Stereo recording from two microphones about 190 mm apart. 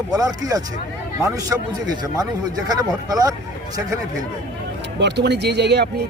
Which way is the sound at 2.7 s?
20° right (ahead or behind).